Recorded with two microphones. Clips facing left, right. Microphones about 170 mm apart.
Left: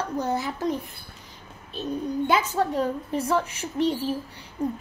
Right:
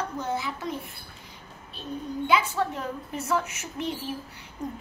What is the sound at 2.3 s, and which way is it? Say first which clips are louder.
A child's voice: even; 40° left (ahead or behind).